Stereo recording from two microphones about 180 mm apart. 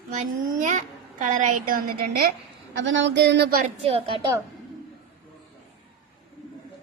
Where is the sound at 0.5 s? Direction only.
45° right (ahead or behind).